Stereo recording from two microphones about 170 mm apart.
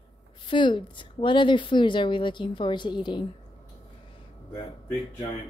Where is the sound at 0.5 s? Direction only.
30° left (ahead or behind).